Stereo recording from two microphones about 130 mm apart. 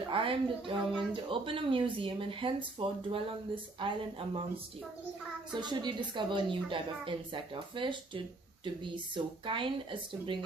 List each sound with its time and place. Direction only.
0.1 s speech: 45° right (ahead or behind)
5.5 s a woman's voice: 35° right (ahead or behind)